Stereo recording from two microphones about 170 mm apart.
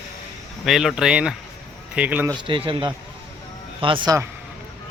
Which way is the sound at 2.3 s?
30° right (ahead or behind).